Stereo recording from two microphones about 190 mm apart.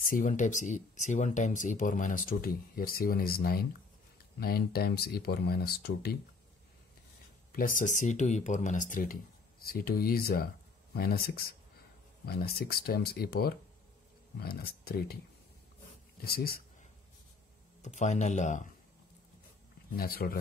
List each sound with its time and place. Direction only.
0.1 s speech: 45° left (ahead or behind)
7.5 s speech: 45° left (ahead or behind)
16.2 s speech: 55° left (ahead or behind)
17.8 s speech: 40° left (ahead or behind)
20.0 s speech: 50° left (ahead or behind)